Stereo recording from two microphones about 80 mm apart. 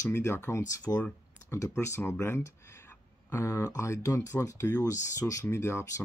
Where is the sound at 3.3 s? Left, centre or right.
Left.